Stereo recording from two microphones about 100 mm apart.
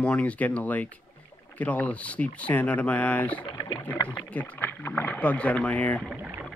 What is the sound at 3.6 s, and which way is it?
Rowboat, 45° left (ahead or behind).